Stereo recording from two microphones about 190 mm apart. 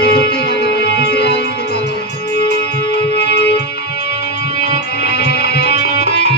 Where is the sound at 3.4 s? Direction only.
60° left (ahead or behind).